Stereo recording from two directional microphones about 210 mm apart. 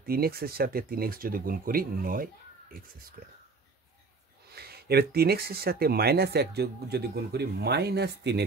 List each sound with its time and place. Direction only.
0.0 s speech: 45° right (ahead or behind)
4.5 s speech: 50° right (ahead or behind)